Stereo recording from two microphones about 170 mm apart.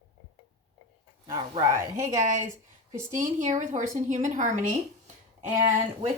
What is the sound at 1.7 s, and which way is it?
Speech, 15° right (ahead or behind).